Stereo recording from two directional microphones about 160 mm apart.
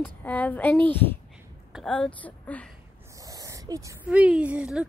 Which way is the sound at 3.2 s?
20° right (ahead or behind).